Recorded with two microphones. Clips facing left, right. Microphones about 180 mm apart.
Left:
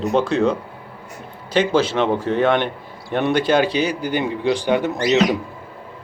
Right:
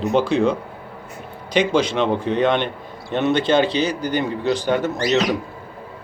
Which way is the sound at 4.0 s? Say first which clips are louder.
Even; 40° right (ahead or behind).